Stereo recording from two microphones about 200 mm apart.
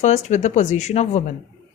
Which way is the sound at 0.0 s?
35° left (ahead or behind).